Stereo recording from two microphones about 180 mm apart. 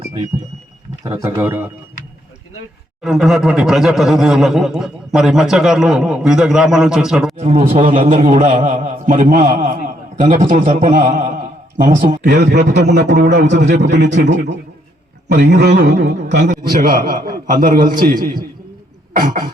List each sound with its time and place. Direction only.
1.0 s speech: 20° right (ahead or behind)
3.0 s speech: centre (ahead or behind)
7.4 s a man's voice: 35° right (ahead or behind)
8.1 s a man's voice: 45° right (ahead or behind)
12.3 s speech: 65° right (ahead or behind)
15.3 s speech: 70° right (ahead or behind)
16.4 s a man's voice: 45° right (ahead or behind)